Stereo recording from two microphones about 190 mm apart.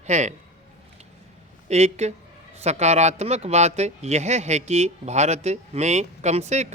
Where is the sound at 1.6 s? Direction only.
35° right (ahead or behind).